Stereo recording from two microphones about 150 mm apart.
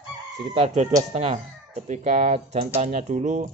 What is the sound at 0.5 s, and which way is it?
Speech, 45° right (ahead or behind).